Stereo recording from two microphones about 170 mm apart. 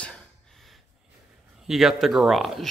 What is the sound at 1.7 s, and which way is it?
Speech, centre (ahead or behind).